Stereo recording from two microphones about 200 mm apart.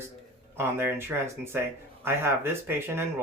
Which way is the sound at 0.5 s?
10° right (ahead or behind).